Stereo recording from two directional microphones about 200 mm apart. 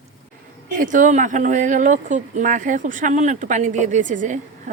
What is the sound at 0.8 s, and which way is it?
Speech, 40° right (ahead or behind).